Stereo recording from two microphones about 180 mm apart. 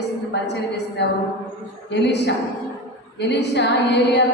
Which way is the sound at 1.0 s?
70° left (ahead or behind).